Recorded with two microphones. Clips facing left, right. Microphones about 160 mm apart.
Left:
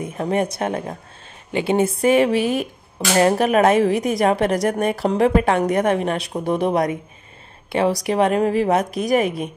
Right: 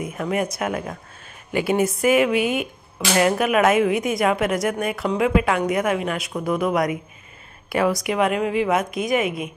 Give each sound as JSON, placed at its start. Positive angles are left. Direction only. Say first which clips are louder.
{"t": 0.0, "sound": "a woman's voice", "louder": "left 3 dB", "side_deg": 30}